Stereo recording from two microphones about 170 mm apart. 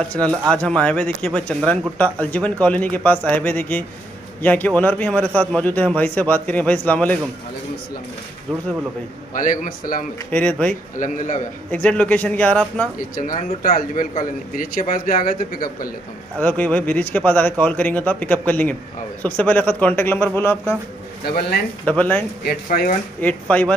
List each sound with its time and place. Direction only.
0.1 s speech: 5° left (ahead or behind)
9.3 s a man's voice: 50° left (ahead or behind)
10.3 s speech: 10° left (ahead or behind)
11.0 s a man's voice: 50° left (ahead or behind)
11.7 s speech: 10° left (ahead or behind)
13.2 s a man's voice: 50° left (ahead or behind)
16.3 s speech: 10° left (ahead or behind)
21.3 s a man's voice: 70° left (ahead or behind)
21.8 s speech: 10° left (ahead or behind)
22.4 s speech: 65° left (ahead or behind)
23.2 s speech: 10° left (ahead or behind)